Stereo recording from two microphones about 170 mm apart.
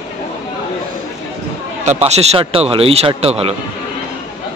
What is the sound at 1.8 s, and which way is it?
A man's voice, 40° right (ahead or behind).